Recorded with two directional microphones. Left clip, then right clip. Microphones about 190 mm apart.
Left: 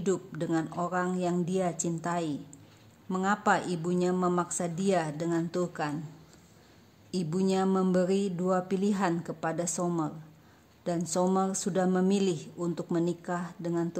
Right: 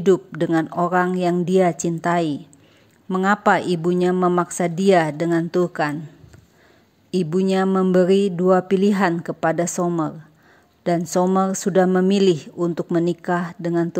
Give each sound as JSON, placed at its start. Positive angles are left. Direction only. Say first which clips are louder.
{"t": 0.0, "sound": "speech", "louder": "right 13 dB", "side_deg": -30}
{"t": 7.1, "sound": "a woman's voice", "louder": "right 10 dB", "side_deg": -30}